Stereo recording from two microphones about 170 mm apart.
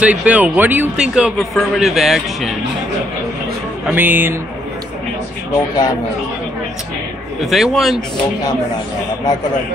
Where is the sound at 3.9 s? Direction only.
10° right (ahead or behind).